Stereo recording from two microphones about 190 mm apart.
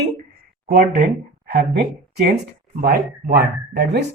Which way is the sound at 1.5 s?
60° right (ahead or behind).